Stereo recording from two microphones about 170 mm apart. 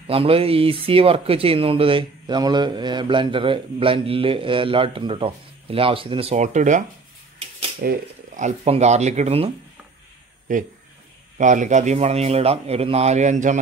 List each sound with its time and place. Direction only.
0.0 s speech: 35° right (ahead or behind)
7.8 s speech: 60° right (ahead or behind)
8.4 s speech: 40° right (ahead or behind)
10.5 s speech: 50° right (ahead or behind)